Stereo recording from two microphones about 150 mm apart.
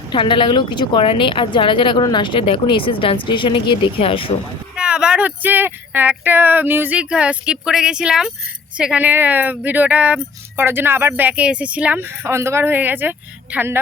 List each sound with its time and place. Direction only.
0.1 s a woman's voice: 35° left (ahead or behind)
4.7 s speech: 5° right (ahead or behind)